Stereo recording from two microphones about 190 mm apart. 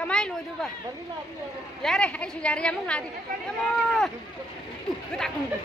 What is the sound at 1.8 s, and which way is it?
A woman's voice, 5° left (ahead or behind).